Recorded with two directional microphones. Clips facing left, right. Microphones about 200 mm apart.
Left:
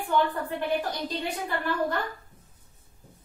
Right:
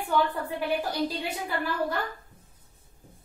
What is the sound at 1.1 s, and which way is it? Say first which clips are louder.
Speech: left 1 dB; 10° right (ahead or behind).